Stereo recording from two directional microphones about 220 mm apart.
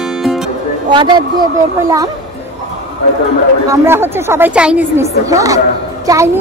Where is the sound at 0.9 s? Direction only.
20° right (ahead or behind).